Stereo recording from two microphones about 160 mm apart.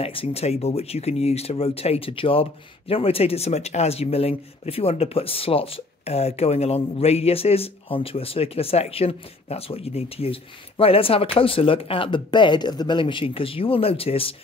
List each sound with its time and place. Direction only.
0.0 s speech: 35° left (ahead or behind)